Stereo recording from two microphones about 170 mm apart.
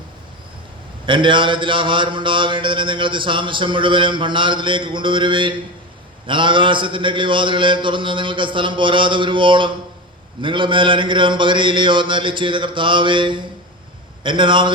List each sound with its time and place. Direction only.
1.0 s mantra: 30° right (ahead or behind)